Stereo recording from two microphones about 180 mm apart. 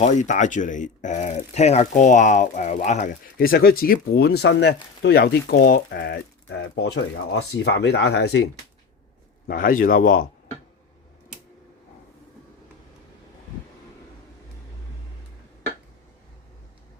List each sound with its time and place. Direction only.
0.0 s speech: 40° left (ahead or behind)
3.3 s speech: 55° left (ahead or behind)
9.5 s speech: 50° left (ahead or behind)